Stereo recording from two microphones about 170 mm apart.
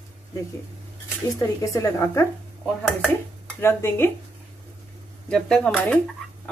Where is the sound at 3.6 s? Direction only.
15° left (ahead or behind).